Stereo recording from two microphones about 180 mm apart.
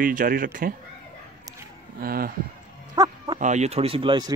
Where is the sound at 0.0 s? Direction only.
50° right (ahead or behind).